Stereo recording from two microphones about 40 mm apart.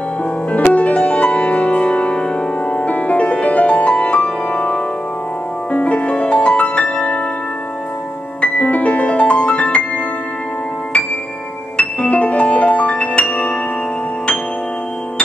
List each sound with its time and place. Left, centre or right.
0.7 s music: left
8.4 s music: left
11.7 s music: left